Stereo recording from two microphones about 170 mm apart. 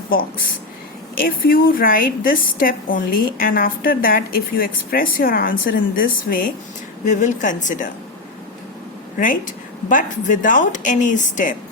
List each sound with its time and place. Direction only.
1.2 s a woman's voice: 60° left (ahead or behind)
7.0 s speech: 45° left (ahead or behind)
9.1 s speech: 55° left (ahead or behind)